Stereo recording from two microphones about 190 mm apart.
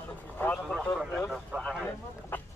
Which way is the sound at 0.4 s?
10° left (ahead or behind).